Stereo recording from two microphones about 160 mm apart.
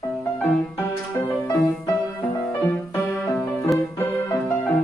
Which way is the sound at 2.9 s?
20° left (ahead or behind).